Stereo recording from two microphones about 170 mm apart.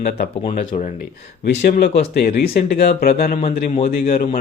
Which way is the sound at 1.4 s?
75° left (ahead or behind).